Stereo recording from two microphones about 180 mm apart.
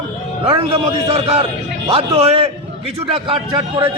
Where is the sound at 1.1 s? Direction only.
35° right (ahead or behind).